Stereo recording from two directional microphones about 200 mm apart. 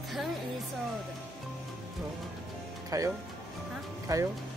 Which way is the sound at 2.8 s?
15° right (ahead or behind).